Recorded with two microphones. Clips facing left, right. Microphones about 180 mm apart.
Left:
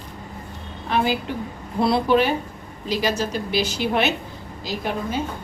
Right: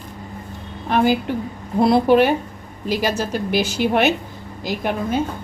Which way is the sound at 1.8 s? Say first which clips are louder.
Right 4 dB; 50° right (ahead or behind).